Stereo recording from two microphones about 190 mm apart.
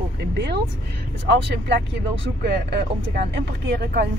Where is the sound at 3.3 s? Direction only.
60° right (ahead or behind).